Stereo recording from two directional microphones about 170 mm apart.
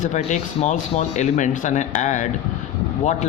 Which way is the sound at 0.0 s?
45° left (ahead or behind).